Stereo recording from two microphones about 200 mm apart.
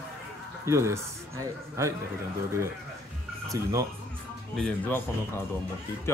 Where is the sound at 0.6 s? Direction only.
15° right (ahead or behind).